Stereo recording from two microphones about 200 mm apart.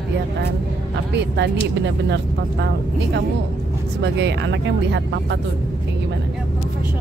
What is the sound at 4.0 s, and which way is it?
Speech, 60° right (ahead or behind).